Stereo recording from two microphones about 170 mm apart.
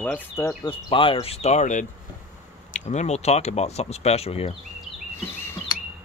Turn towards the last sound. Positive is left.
turn(degrees=15)  # may be behind; listen again after turning